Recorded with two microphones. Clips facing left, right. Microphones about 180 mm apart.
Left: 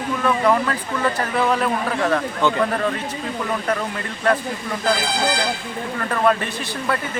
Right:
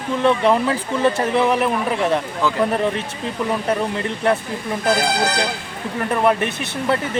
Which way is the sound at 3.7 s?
20° right (ahead or behind).